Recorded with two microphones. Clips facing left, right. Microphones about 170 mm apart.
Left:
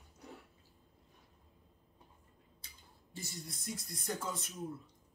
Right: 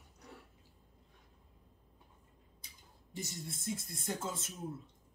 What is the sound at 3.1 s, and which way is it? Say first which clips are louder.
Speech: right 3 dB; 20° right (ahead or behind).